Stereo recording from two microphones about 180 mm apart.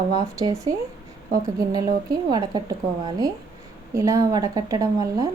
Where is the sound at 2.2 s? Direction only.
25° right (ahead or behind).